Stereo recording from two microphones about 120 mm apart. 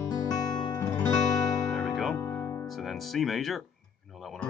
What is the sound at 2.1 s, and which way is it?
Music, 25° left (ahead or behind).